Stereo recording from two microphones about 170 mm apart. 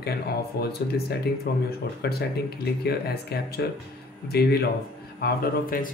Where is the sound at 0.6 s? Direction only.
70° left (ahead or behind).